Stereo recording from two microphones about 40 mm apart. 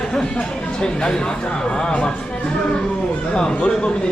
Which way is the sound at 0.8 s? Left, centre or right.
Centre.